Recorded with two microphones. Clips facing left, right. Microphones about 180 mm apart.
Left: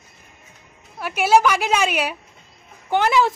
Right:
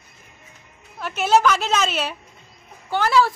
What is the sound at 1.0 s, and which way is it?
A woman's voice, 10° left (ahead or behind).